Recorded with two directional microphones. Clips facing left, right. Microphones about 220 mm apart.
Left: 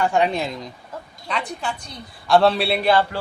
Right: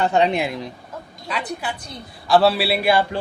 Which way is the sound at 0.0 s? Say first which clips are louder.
Right 2 dB; 20° right (ahead or behind).